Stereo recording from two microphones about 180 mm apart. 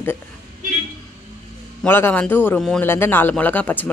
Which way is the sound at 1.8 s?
10° left (ahead or behind).